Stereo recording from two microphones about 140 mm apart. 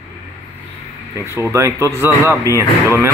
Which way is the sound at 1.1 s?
15° right (ahead or behind).